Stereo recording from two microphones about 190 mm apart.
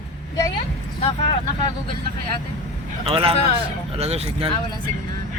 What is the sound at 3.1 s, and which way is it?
A man's voice, 30° right (ahead or behind).